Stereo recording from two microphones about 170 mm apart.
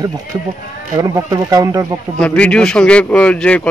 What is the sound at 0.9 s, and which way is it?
Speech, 20° right (ahead or behind).